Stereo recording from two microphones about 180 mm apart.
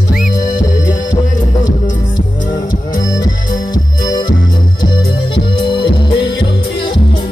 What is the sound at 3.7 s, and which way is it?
Music, 20° left (ahead or behind).